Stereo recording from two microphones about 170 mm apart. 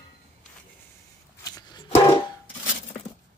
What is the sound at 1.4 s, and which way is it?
Music, 20° left (ahead or behind).